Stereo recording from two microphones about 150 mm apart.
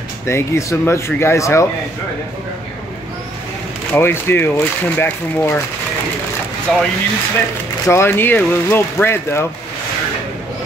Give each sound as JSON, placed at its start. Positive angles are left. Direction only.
{"t": 0.3, "sound": "speech", "side_deg": 15}
{"t": 3.9, "sound": "speech", "side_deg": 15}
{"t": 6.7, "sound": "speech", "side_deg": 5}
{"t": 7.8, "sound": "speech", "side_deg": 15}